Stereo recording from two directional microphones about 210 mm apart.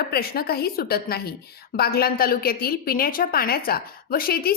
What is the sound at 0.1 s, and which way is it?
A woman's voice, 45° left (ahead or behind).